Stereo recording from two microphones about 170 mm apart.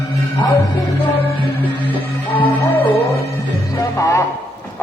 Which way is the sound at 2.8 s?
35° left (ahead or behind).